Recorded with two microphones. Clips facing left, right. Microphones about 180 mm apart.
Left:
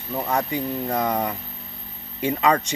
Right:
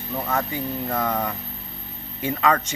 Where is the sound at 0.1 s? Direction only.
15° left (ahead or behind).